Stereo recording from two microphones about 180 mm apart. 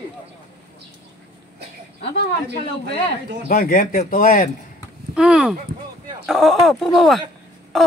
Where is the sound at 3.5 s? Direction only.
55° left (ahead or behind).